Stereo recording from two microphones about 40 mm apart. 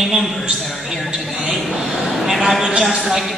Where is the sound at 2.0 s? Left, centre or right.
Centre.